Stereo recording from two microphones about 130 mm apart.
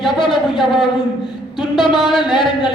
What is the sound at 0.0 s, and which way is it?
Speech, centre (ahead or behind).